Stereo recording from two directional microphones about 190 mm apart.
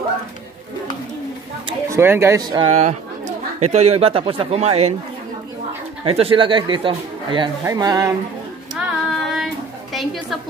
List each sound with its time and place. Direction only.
1.9 s speech: 15° right (ahead or behind)
2.5 s a man's voice: 30° right (ahead or behind)
6.0 s speech: 30° right (ahead or behind)
8.7 s child singing: centre (ahead or behind)